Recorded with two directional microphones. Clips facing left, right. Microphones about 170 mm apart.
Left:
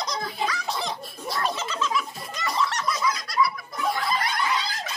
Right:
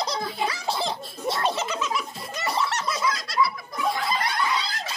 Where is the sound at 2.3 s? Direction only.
30° right (ahead or behind).